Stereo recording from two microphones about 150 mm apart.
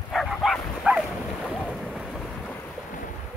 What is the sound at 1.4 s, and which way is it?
Boat, 10° left (ahead or behind).